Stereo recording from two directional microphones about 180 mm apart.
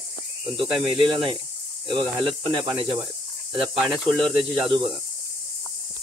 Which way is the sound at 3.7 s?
Centre (ahead or behind).